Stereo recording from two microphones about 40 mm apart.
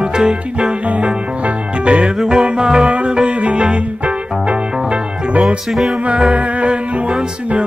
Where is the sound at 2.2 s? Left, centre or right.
Centre.